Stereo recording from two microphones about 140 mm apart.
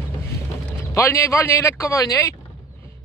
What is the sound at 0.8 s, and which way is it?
Speech, 20° left (ahead or behind).